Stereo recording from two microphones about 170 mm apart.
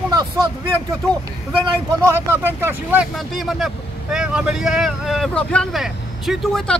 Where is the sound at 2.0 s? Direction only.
15° right (ahead or behind).